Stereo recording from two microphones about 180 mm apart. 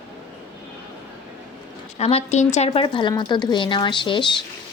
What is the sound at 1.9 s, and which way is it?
A woman's voice, 35° left (ahead or behind).